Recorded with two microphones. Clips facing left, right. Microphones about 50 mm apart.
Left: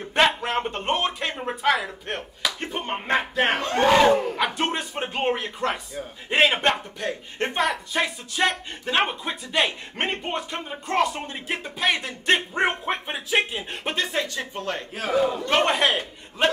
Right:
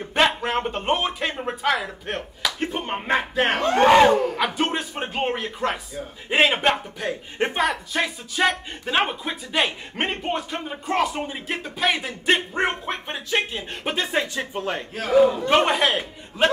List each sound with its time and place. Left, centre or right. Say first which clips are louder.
0.1 s speech: even; centre
3.8 s speech: right 3 dB; centre
4.4 s speech: right 1 dB; centre
14.0 s speech: right 3 dB; centre